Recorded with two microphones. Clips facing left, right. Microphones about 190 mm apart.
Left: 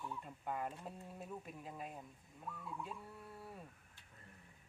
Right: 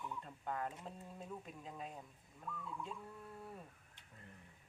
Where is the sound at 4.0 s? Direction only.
20° right (ahead or behind).